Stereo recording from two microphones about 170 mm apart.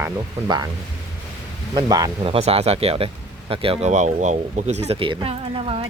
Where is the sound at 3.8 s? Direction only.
45° right (ahead or behind).